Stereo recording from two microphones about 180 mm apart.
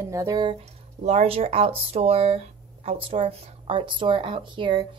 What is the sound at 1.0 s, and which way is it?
A woman's voice, 35° right (ahead or behind).